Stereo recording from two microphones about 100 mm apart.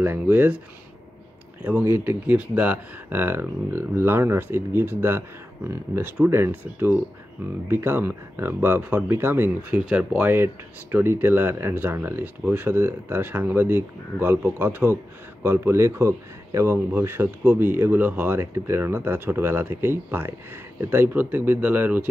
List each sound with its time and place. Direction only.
0.0 s speech: 20° right (ahead or behind)
1.6 s speech: 20° right (ahead or behind)
10.3 s speech: 20° right (ahead or behind)